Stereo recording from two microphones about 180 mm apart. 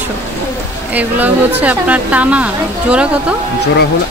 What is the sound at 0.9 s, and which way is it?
A woman's voice, 10° right (ahead or behind).